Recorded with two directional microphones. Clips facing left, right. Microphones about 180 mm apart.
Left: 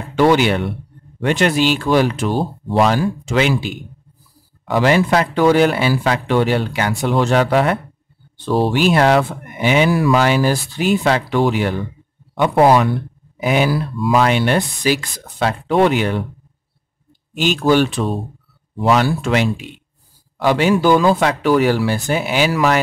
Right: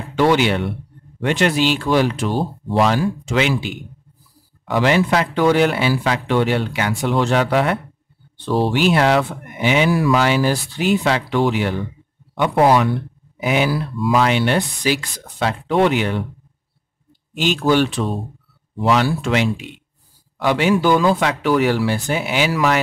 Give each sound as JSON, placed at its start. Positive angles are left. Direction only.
{"t": 0.1, "sound": "speech", "side_deg": 45}
{"t": 17.6, "sound": "speech", "side_deg": 45}